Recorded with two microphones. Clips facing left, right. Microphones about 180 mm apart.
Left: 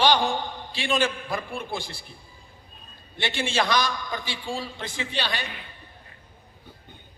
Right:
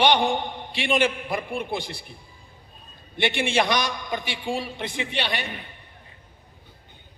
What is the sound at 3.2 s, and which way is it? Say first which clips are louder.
A man's voice: right 3 dB; 20° right (ahead or behind).